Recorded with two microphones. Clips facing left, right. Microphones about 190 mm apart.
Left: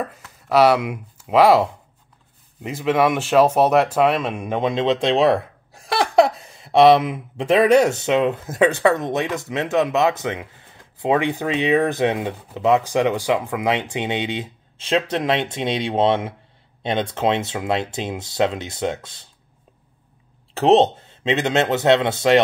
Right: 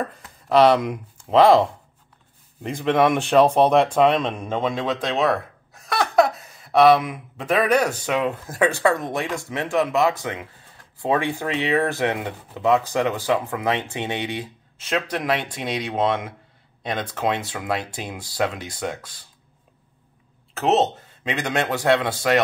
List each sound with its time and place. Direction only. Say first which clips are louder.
0.5 s speech: even; 5° left (ahead or behind); by 19.2 s 25° left (ahead or behind)
20.5 s speech: left 5 dB; 30° left (ahead or behind)